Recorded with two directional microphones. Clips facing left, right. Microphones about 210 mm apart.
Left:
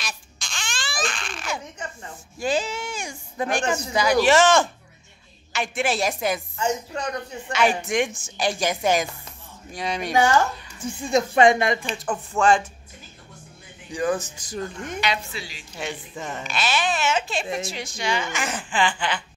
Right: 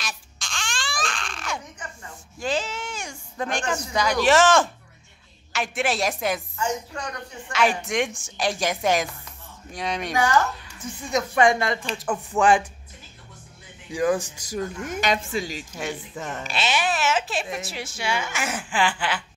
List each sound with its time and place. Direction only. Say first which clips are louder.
0.0 s baby cry: even; centre (ahead or behind)
2.3 s speech: left 2 dB; 10° left (ahead or behind)
6.5 s a woman's voice: left 2 dB; 20° left (ahead or behind)
7.5 s speech: left 1 dB; centre (ahead or behind)
10.1 s a woman's voice: left 3 dB; 25° left (ahead or behind)
11.9 s speech: even; centre (ahead or behind)
12.4 s a woman's voice: even; 15° right (ahead or behind)
13.8 s a woman's voice: right 2 dB; 5° right (ahead or behind)
15.0 s speech: right 4 dB; 45° right (ahead or behind)
15.8 s a woman's voice: left 1 dB; 5° right (ahead or behind)